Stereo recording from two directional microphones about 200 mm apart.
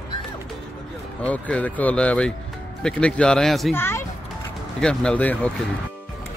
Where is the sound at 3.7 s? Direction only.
10° left (ahead or behind).